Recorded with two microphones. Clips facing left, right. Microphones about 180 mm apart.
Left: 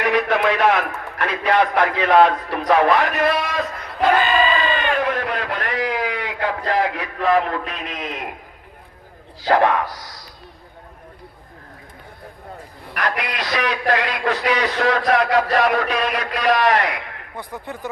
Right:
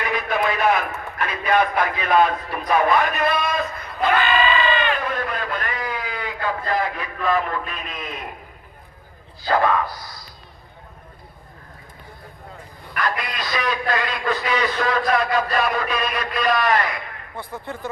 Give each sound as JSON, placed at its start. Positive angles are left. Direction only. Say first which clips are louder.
{"t": 0.0, "sound": "a man's voice", "louder": "left 5 dB", "side_deg": 75}
{"t": 4.2, "sound": "crowd", "louder": "left 1 dB", "side_deg": 40}
{"t": 5.0, "sound": "a sound", "louder": "left 3 dB", "side_deg": 75}
{"t": 9.4, "sound": "a man's voice", "louder": "left 3 dB", "side_deg": 70}
{"t": 13.0, "sound": "a man's voice", "louder": "left 2 dB", "side_deg": 75}
{"t": 17.3, "sound": "speech", "louder": "even", "side_deg": 15}